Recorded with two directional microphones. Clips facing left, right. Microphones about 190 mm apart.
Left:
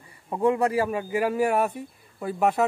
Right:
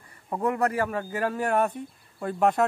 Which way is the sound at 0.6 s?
15° left (ahead or behind).